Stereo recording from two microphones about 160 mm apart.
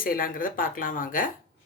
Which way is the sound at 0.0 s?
65° left (ahead or behind).